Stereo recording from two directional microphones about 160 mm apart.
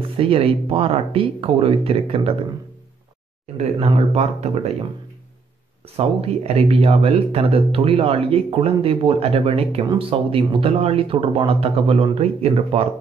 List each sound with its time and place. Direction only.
0.2 s speech: 35° right (ahead or behind)
3.5 s speech: 40° right (ahead or behind)
5.9 s speech: 40° right (ahead or behind)